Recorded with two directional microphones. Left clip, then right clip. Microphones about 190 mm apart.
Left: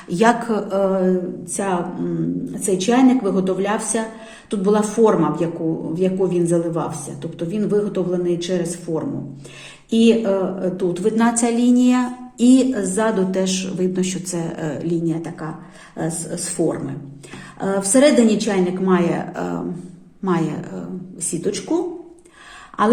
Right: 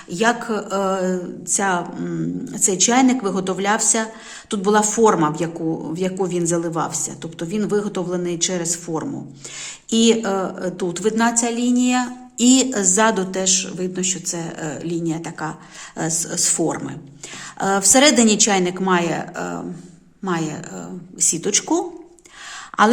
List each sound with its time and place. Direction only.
0.1 s speech: 5° right (ahead or behind); by 9.0 s 35° right (ahead or behind)
10.1 s speech: 35° right (ahead or behind)
11.2 s speech: 15° right (ahead or behind)
12.4 s speech: 30° right (ahead or behind)
13.3 s speech: 15° right (ahead or behind)
21.4 s speech: 40° right (ahead or behind)